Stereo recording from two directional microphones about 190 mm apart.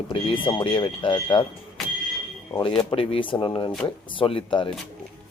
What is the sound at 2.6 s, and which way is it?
Speech, 25° left (ahead or behind).